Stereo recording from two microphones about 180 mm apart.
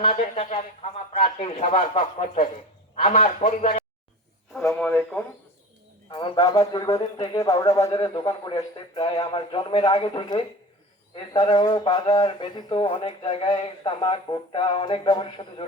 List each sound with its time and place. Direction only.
0.0 s a man's voice: 35° left (ahead or behind)
4.5 s speech: 5° left (ahead or behind)
6.1 s speech: 20° left (ahead or behind)